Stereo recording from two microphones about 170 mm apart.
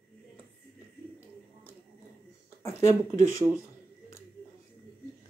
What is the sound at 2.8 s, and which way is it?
Speech, 15° left (ahead or behind).